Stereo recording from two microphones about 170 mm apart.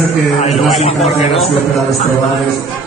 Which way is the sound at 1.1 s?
40° left (ahead or behind).